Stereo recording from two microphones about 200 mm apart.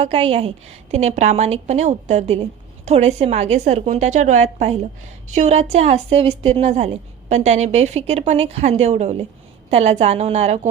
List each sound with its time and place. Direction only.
0.0 s a woman's voice: 30° right (ahead or behind)